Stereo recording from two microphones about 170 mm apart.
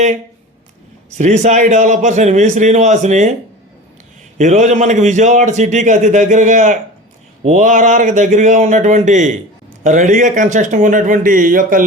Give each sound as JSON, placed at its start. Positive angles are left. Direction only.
{"t": 1.2, "sound": "a man's voice", "side_deg": -45}
{"t": 4.4, "sound": "a man's voice", "side_deg": -45}